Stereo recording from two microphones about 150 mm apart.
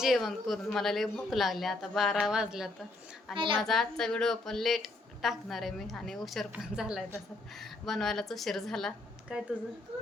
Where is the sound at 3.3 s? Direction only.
35° right (ahead or behind).